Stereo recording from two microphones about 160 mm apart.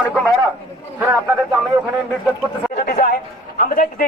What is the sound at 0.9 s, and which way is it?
Speech, 10° right (ahead or behind).